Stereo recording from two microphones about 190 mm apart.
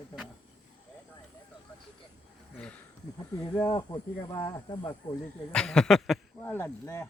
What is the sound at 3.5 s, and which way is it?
Speech, 20° left (ahead or behind).